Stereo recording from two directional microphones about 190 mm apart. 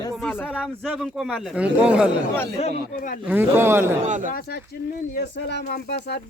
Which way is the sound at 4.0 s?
40° right (ahead or behind).